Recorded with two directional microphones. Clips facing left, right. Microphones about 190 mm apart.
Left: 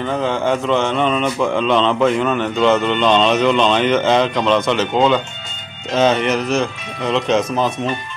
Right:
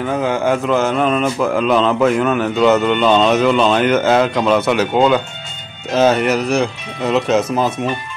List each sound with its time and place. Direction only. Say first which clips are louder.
0.0 s speech: right 2 dB; 5° right (ahead or behind)